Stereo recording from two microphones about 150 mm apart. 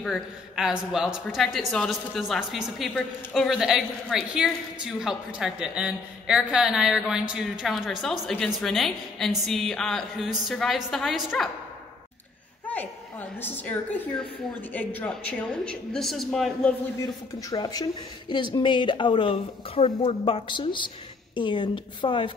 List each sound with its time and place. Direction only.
0.0 s a woman's voice: centre (ahead or behind)
12.6 s a woman's voice: 10° left (ahead or behind)
17.4 s speech: 25° left (ahead or behind)